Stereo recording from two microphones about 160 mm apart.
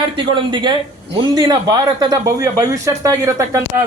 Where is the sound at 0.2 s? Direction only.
30° right (ahead or behind).